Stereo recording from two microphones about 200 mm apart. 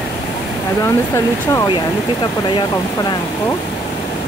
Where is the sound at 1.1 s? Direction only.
15° left (ahead or behind).